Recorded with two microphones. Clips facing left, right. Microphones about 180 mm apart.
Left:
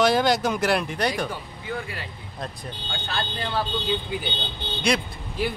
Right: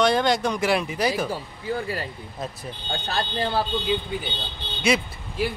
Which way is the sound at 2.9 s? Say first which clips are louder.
Right 4 dB; 40° right (ahead or behind).